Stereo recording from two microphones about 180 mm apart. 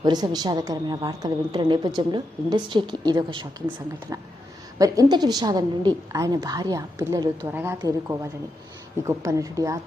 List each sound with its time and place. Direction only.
0.0 s a woman's voice: 20° right (ahead or behind)
4.8 s a woman's voice: 20° right (ahead or behind)